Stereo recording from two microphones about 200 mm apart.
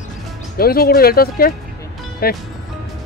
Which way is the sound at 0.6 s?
50° left (ahead or behind).